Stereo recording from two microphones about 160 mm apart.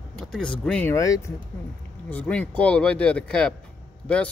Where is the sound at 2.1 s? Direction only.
5° left (ahead or behind).